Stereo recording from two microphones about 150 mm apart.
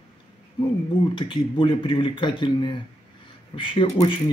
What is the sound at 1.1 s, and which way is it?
Speech, 35° left (ahead or behind).